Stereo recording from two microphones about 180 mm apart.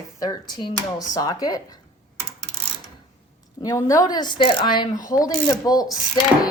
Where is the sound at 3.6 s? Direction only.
20° left (ahead or behind).